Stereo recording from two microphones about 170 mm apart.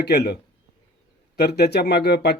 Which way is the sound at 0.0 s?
75° left (ahead or behind).